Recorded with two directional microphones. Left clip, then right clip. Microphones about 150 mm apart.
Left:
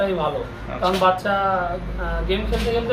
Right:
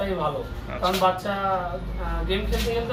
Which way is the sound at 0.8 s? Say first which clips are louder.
Left 4 dB; 15° left (ahead or behind).